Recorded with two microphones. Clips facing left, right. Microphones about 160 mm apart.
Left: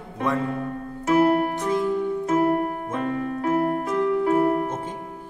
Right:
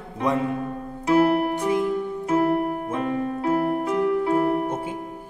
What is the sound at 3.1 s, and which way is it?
Keyboard, 25° right (ahead or behind).